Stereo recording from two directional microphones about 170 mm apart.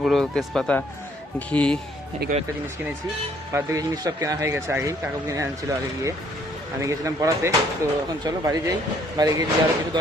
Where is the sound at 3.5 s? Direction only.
20° right (ahead or behind).